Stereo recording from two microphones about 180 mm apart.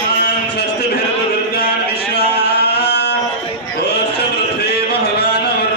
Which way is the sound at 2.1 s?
65° left (ahead or behind).